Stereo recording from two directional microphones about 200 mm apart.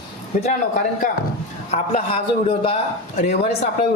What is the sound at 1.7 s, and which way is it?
A man's voice, 30° left (ahead or behind).